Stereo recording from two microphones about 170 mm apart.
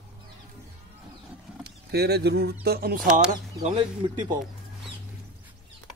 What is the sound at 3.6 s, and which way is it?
Speech, 35° right (ahead or behind).